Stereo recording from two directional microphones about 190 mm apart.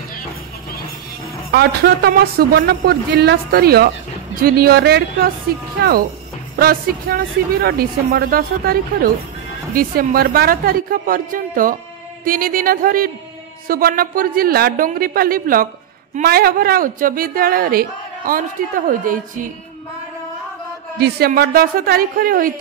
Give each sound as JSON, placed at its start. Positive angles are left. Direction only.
{"t": 1.5, "sound": "a man's voice", "side_deg": -55}
{"t": 21.0, "sound": "a man's voice", "side_deg": -55}